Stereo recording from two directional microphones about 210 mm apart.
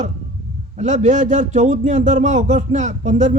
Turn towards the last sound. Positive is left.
turn(degrees=-35)  # may be behind; listen again after turning